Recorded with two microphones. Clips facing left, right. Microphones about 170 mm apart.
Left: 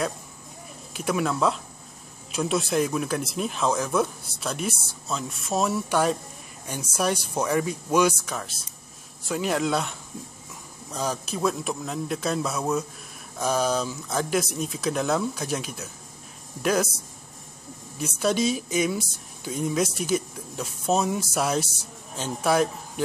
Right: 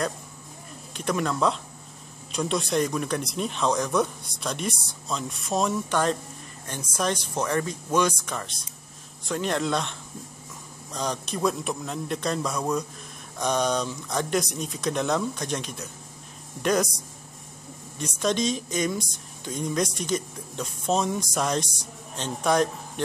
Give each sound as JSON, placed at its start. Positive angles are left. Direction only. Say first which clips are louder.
{"t": 0.9, "sound": "speech", "louder": "left 1 dB", "side_deg": 5}
{"t": 17.9, "sound": "speech", "louder": "left 1 dB", "side_deg": 5}